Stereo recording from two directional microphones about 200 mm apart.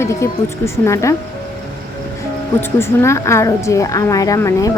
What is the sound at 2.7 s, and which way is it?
Speech, 15° left (ahead or behind).